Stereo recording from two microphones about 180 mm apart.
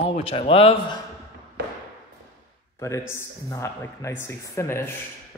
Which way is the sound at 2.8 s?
15° left (ahead or behind).